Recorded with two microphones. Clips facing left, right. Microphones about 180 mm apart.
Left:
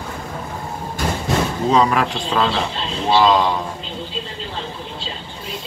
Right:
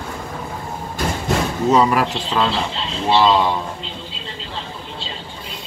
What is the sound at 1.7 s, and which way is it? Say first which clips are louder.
Speech: right 1 dB; 5° right (ahead or behind).